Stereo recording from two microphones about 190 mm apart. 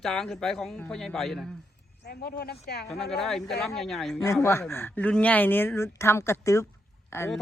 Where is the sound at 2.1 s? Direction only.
55° left (ahead or behind).